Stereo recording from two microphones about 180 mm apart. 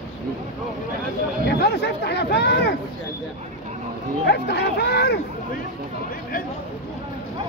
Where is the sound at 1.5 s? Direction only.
60° left (ahead or behind).